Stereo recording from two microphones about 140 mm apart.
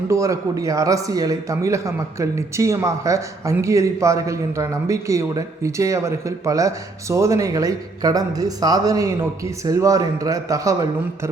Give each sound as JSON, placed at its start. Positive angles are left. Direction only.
{"t": 0.1, "sound": "a man's voice", "side_deg": -20}